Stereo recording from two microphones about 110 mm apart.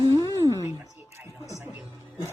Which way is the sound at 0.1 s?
30° left (ahead or behind).